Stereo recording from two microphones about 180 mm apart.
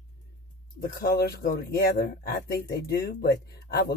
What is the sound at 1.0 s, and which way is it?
Speech, 65° left (ahead or behind).